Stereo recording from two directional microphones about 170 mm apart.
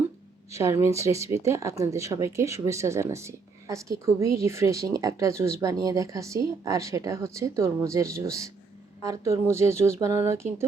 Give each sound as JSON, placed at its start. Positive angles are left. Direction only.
{"t": 0.5, "sound": "speech", "side_deg": -15}